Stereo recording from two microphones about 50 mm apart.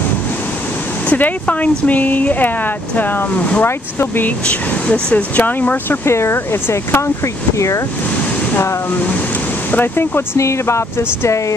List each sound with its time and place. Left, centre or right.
1.0 s speech: left
3.6 s speech: left
4.5 s speech: left
6.0 s speech: left
7.5 s speech: left
9.7 s speech: left
10.3 s speech: left